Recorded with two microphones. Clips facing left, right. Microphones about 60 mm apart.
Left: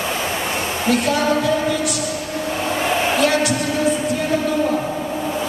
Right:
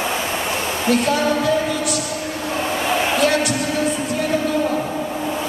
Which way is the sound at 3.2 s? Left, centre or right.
Centre.